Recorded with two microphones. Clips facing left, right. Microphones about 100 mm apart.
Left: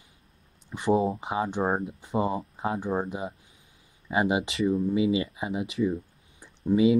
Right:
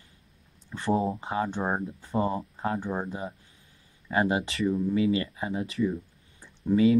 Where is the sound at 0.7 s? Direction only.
15° left (ahead or behind).